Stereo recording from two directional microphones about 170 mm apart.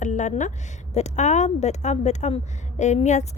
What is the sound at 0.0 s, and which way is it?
A woman's voice, 45° left (ahead or behind).